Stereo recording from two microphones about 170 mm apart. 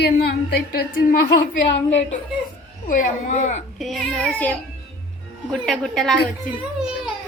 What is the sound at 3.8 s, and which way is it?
A child's voice, centre (ahead or behind).